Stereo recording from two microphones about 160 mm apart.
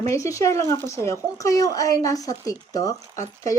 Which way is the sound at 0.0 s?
20° left (ahead or behind).